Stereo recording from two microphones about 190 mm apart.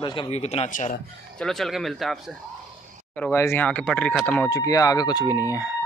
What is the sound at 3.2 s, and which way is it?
Speech, 15° left (ahead or behind).